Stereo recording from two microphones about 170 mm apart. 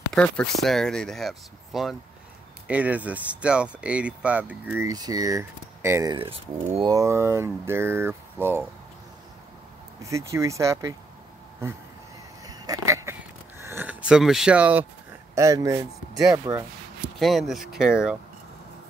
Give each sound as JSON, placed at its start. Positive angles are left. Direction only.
{"t": 0.1, "sound": "speech", "side_deg": 5}
{"t": 4.8, "sound": "speech", "side_deg": -25}
{"t": 6.1, "sound": "speech", "side_deg": -35}
{"t": 6.9, "sound": "speech", "side_deg": -15}
{"t": 10.0, "sound": "speech", "side_deg": -15}
{"t": 12.4, "sound": "a sound", "side_deg": -20}
{"t": 13.6, "sound": "speech", "side_deg": -15}
{"t": 15.3, "sound": "speech", "side_deg": -20}
{"t": 17.2, "sound": "speech", "side_deg": 0}